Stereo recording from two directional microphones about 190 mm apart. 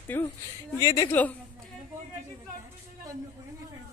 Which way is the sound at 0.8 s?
20° left (ahead or behind).